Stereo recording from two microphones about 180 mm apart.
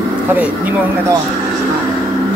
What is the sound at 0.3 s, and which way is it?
Speech, 10° right (ahead or behind).